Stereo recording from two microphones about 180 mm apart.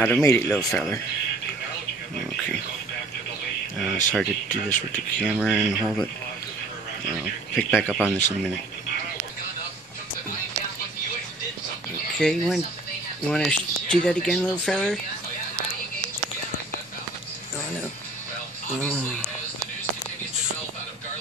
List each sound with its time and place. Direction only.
0.0 s speech: 15° left (ahead or behind)
4.1 s speech: 5° left (ahead or behind)
5.2 s speech: 5° right (ahead or behind)
7.5 s speech: centre (ahead or behind)
12.2 s speech: centre (ahead or behind)